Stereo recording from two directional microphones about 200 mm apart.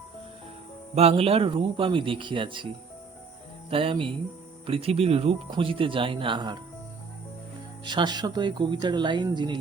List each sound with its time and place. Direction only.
0.9 s speech: 30° right (ahead or behind)
3.7 s speech: 25° right (ahead or behind)
7.9 s speech: 20° right (ahead or behind)